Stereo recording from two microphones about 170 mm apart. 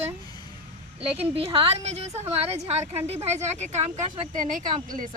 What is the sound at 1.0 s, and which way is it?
A woman's voice, 35° right (ahead or behind).